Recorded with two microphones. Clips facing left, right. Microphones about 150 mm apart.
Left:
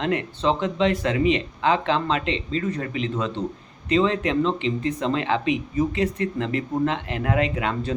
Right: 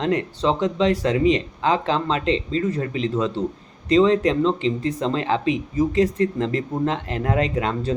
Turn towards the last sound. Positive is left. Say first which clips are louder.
# right 2 dB
turn(degrees=-35)  # may be behind; listen again after turning